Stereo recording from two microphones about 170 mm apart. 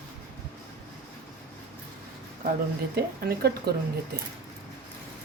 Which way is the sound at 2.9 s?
65° right (ahead or behind).